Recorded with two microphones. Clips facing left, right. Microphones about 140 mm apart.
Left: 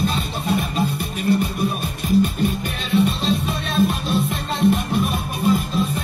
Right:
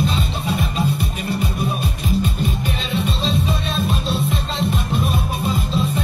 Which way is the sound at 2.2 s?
55° left (ahead or behind).